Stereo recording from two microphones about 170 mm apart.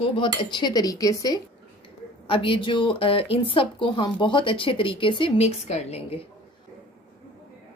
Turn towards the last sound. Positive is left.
turn(degrees=40)  # may be behind; listen again after turning